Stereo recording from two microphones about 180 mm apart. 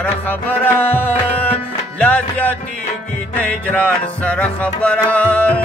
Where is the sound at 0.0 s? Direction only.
10° left (ahead or behind).